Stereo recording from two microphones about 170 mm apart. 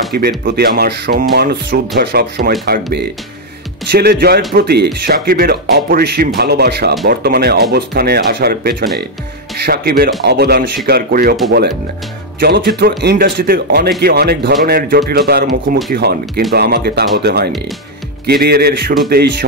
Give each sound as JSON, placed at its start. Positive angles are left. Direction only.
{"t": 0.1, "sound": "speech", "side_deg": -60}
{"t": 12.4, "sound": "speech", "side_deg": -70}